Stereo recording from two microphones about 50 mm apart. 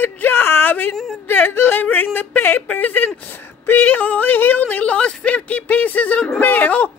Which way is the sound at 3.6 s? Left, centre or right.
Left.